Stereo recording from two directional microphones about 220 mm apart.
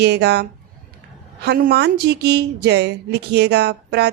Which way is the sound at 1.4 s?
45° right (ahead or behind).